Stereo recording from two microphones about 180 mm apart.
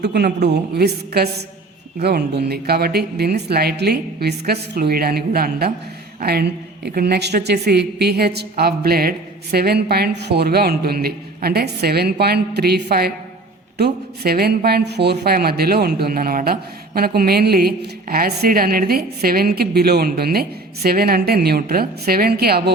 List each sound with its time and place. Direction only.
0.0 s speech: 65° right (ahead or behind)